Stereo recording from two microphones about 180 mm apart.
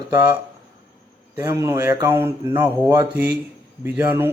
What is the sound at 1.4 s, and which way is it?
Speech, 15° right (ahead or behind).